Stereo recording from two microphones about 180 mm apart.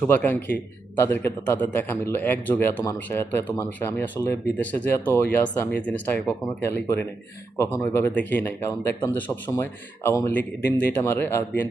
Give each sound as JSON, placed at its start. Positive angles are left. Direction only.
{"t": 0.1, "sound": "a man's voice", "side_deg": 10}